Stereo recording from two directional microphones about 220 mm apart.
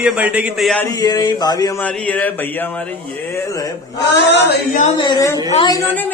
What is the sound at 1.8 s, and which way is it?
Speech, 5° left (ahead or behind).